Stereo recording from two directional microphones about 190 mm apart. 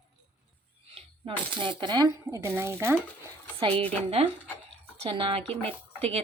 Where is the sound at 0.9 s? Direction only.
25° right (ahead or behind).